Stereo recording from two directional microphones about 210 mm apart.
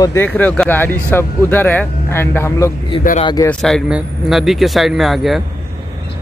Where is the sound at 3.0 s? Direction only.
40° left (ahead or behind).